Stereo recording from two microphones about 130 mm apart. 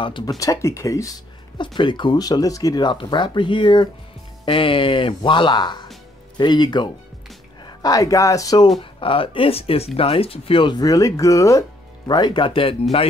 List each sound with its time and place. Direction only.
0.0 s speech: 40° left (ahead or behind)
0.4 s speech: 25° left (ahead or behind)
1.8 s a woman's voice: 40° left (ahead or behind)
9.0 s speech: 45° left (ahead or behind); by 11.6 s 25° left (ahead or behind)
12.1 s speech: 35° left (ahead or behind)